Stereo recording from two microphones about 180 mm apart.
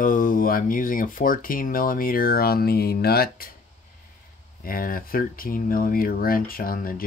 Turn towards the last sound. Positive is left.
turn(degrees=55)  # may be behind; listen again after turning